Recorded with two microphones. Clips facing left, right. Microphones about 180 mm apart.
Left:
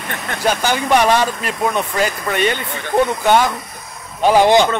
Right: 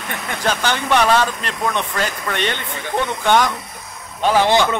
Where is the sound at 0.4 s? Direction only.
10° left (ahead or behind).